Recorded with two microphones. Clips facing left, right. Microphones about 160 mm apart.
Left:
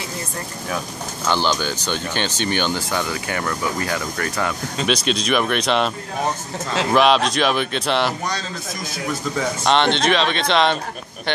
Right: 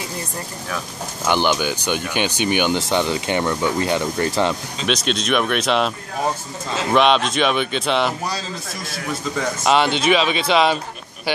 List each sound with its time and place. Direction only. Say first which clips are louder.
1.2 s speech: right 2 dB; 15° right (ahead or behind)
4.8 s speech: even; centre (ahead or behind)
6.9 s speech: even; centre (ahead or behind)
9.6 s speech: even; 5° right (ahead or behind)